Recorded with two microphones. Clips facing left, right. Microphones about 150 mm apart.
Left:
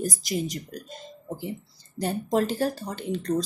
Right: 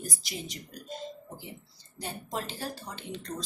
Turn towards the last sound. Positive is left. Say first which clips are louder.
# left 10 dB
turn(degrees=45)  # may be behind; listen again after turning